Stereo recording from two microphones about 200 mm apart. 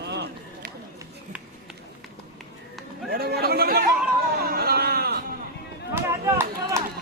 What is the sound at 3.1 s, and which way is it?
Chatter, 50° right (ahead or behind).